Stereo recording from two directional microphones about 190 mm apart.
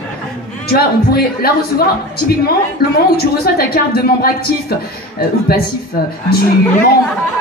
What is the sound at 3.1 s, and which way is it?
A woman's voice, 55° left (ahead or behind).